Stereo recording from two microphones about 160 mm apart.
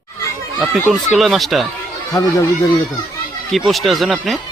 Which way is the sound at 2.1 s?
20° left (ahead or behind).